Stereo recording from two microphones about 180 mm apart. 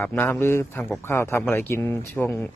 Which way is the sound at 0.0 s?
10° left (ahead or behind).